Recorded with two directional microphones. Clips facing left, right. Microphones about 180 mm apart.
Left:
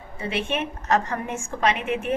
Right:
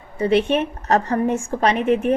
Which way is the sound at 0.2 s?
40° right (ahead or behind).